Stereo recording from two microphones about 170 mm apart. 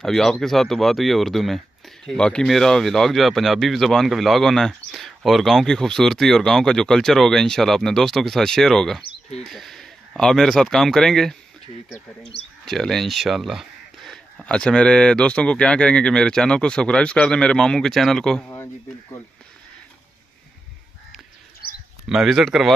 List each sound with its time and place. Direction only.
0.0 s speech: 5° left (ahead or behind)
12.6 s speech: centre (ahead or behind)
21.6 s a sound: 65° left (ahead or behind)
22.0 s speech: centre (ahead or behind)